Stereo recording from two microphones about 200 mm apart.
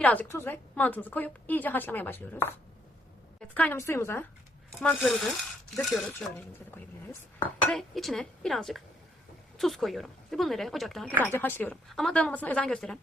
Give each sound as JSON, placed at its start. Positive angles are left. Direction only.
{"t": 0.0, "sound": "a woman's voice", "side_deg": 10}
{"t": 3.5, "sound": "a woman's voice", "side_deg": 10}